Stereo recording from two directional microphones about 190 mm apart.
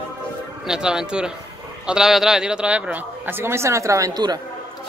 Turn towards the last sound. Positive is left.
turn(degrees=-20)  # may be behind; listen again after turning